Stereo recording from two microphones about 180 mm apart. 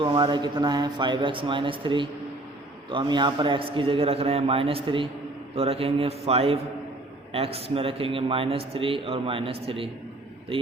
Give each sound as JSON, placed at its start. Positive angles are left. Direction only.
{"t": 0.0, "sound": "a man's voice", "side_deg": -25}